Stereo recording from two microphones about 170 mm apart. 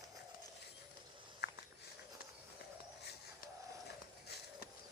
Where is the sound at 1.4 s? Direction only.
75° left (ahead or behind).